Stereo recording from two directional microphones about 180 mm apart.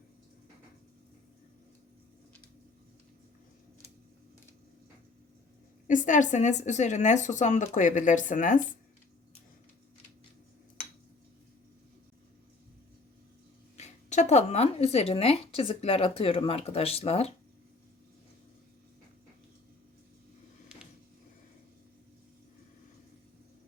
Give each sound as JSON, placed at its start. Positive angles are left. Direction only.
{"t": 5.9, "sound": "speech", "side_deg": 45}
{"t": 13.7, "sound": "speech", "side_deg": 40}